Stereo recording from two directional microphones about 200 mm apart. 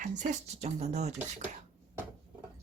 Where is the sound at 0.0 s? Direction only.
35° right (ahead or behind).